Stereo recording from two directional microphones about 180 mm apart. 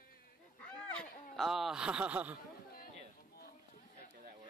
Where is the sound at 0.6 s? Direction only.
5° left (ahead or behind).